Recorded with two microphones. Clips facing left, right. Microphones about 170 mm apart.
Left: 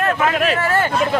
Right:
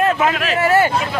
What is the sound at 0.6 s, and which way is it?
Speech, 10° right (ahead or behind).